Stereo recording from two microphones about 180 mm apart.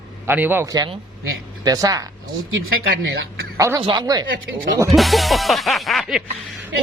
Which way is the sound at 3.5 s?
15° right (ahead or behind).